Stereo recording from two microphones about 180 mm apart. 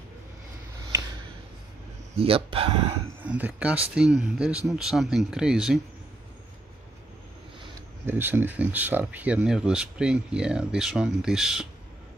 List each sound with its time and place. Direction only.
2.1 s speech: 30° right (ahead or behind)
3.2 s speech: 10° right (ahead or behind)
8.1 s speech: 10° right (ahead or behind)